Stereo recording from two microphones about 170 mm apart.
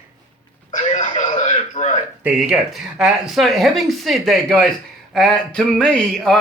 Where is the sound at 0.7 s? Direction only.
45° left (ahead or behind).